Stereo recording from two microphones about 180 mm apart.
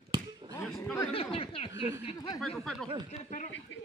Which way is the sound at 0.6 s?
Centre (ahead or behind).